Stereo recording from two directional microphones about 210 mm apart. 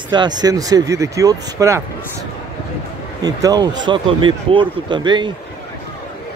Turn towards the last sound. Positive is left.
turn(degrees=-20)  # may be behind; listen again after turning